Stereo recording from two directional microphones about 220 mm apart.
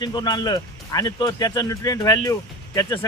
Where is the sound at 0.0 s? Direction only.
20° left (ahead or behind).